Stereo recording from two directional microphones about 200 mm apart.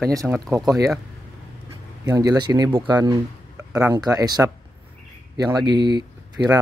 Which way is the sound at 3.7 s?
5° right (ahead or behind).